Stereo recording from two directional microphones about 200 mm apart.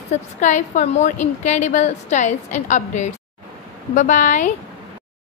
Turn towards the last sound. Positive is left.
turn(degrees=40)  # may be behind; listen again after turning